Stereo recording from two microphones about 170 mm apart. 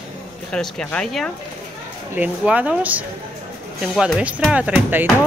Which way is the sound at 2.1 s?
10° right (ahead or behind).